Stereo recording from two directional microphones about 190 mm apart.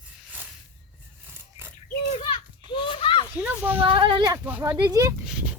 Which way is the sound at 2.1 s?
30° left (ahead or behind).